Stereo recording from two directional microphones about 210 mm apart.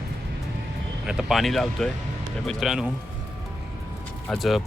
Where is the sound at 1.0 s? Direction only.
Centre (ahead or behind).